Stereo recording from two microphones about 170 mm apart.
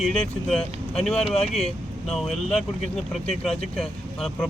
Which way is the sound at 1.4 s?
40° left (ahead or behind).